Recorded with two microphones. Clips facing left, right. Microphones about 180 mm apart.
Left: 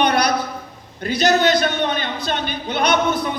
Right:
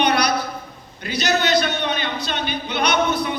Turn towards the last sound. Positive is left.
turn(degrees=50)  # may be behind; listen again after turning